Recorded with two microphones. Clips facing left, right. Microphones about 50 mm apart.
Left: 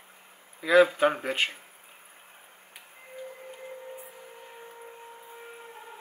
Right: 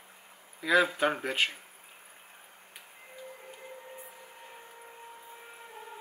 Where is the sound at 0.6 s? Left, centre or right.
Centre.